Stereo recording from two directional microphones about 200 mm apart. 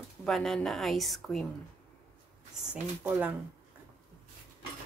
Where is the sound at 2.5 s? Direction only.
5° right (ahead or behind).